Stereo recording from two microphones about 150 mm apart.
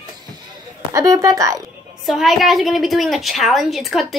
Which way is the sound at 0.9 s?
20° right (ahead or behind).